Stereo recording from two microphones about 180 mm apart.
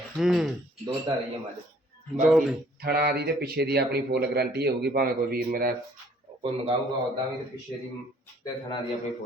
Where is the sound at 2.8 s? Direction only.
65° right (ahead or behind).